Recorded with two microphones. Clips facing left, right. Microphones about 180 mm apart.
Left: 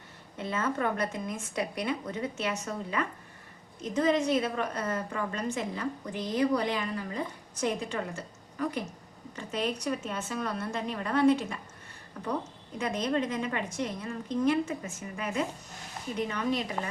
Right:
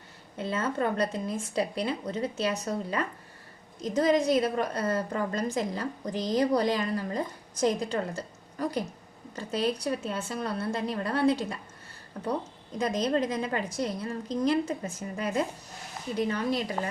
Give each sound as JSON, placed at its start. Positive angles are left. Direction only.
{"t": 0.3, "sound": "a woman's voice", "side_deg": -30}